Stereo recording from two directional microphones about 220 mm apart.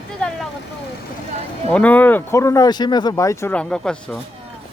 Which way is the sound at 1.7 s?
5° left (ahead or behind).